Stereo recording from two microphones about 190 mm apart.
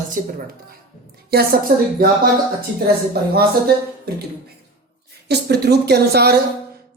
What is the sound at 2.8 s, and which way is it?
Speech, 55° right (ahead or behind).